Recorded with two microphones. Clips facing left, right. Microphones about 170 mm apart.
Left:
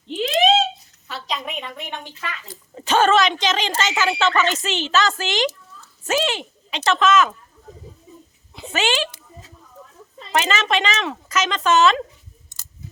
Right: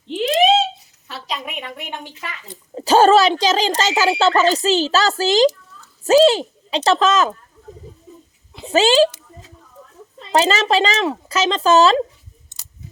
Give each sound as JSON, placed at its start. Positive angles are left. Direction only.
{"t": 0.2, "sound": "a sound", "side_deg": 0}
{"t": 2.2, "sound": "a woman's voice", "side_deg": -20}
{"t": 2.7, "sound": "speech", "side_deg": -35}
{"t": 8.7, "sound": "speech", "side_deg": -35}
{"t": 10.3, "sound": "speech", "side_deg": -35}